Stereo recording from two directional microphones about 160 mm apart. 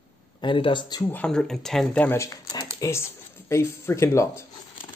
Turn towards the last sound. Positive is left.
turn(degrees=15)  # may be behind; listen again after turning